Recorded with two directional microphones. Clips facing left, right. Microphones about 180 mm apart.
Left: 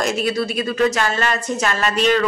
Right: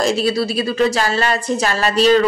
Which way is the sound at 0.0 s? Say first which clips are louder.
Right 3 dB; 30° right (ahead or behind).